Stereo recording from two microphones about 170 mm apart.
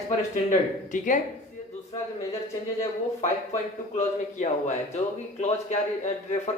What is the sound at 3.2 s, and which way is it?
A man's voice, 45° left (ahead or behind).